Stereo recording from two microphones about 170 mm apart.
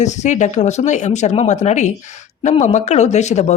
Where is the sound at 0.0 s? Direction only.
45° left (ahead or behind).